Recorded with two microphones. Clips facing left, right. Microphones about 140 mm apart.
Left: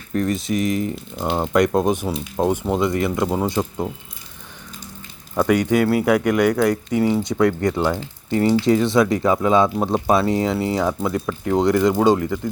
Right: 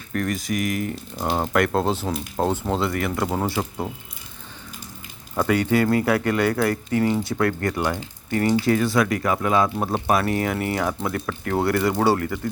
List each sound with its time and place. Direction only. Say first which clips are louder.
0.1 s speech: left 4 dB; 25° left (ahead or behind)
1.1 s speech: left 1 dB; centre (ahead or behind)
1.5 s speech: left 5 dB; 15° left (ahead or behind)
2.1 s speech: left 3 dB; centre (ahead or behind)
2.5 s speech: left 6 dB; 15° left (ahead or behind)
3.6 s speech: left 4 dB; 5° left (ahead or behind)
5.4 s speech: left 3 dB; 15° left (ahead or behind)